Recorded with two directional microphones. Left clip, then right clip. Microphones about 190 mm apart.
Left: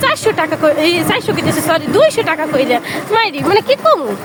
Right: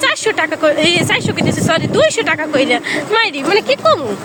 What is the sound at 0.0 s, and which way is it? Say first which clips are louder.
Speech: left 1 dB; 5° right (ahead or behind).